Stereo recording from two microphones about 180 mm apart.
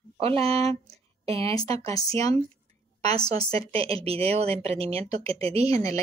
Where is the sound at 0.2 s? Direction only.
30° right (ahead or behind).